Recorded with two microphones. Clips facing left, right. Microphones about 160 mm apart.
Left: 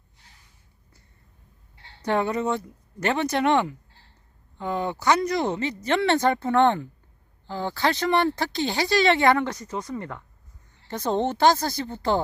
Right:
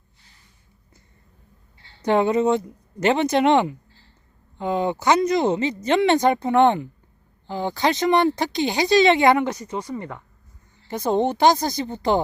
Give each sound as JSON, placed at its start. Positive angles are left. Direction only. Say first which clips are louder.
{"t": 2.0, "sound": "speech", "louder": "right 6 dB", "side_deg": -20}